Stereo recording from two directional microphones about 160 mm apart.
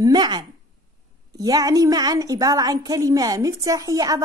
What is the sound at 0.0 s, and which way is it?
A woman's voice, 25° right (ahead or behind).